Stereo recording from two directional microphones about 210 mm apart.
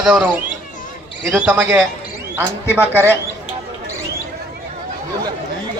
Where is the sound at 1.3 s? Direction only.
5° right (ahead or behind).